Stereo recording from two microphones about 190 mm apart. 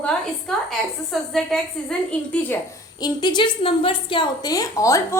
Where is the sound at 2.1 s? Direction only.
5° left (ahead or behind).